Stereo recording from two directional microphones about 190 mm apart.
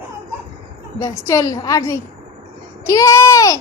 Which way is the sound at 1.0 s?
15° left (ahead or behind).